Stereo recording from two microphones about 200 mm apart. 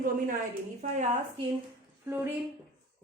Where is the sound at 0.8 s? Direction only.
35° right (ahead or behind).